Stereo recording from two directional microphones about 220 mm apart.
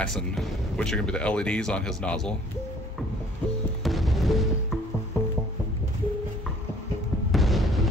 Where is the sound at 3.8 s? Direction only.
Centre (ahead or behind).